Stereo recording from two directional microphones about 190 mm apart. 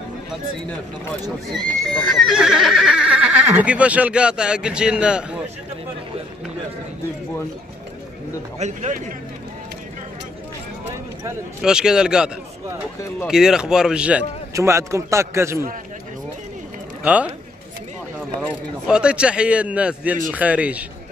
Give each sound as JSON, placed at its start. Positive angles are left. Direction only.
{"t": 1.9, "sound": "speech", "side_deg": 0}
{"t": 8.5, "sound": "a man's voice", "side_deg": -40}
{"t": 11.6, "sound": "speech", "side_deg": -5}
{"t": 13.3, "sound": "a man's voice", "side_deg": -5}
{"t": 17.0, "sound": "a man's voice", "side_deg": -5}
{"t": 18.9, "sound": "a man's voice", "side_deg": -5}